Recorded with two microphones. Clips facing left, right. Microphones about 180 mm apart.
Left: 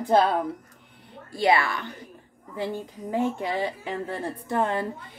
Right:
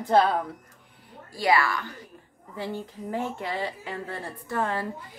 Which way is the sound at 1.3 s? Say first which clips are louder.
Left 1 dB; 25° left (ahead or behind).